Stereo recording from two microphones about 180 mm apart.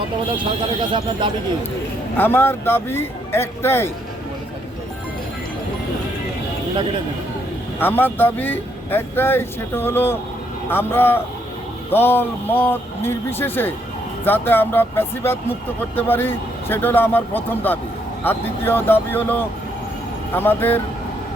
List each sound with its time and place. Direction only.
0.8 s speech: 30° right (ahead or behind)
2.1 s speech: 10° left (ahead or behind)
7.8 s speech: 10° left (ahead or behind)